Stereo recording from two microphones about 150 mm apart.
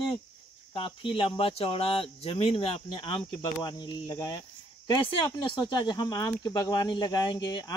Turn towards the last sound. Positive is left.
turn(degrees=30)  # may be behind; listen again after turning